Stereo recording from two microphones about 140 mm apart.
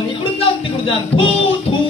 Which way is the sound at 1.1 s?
50° left (ahead or behind).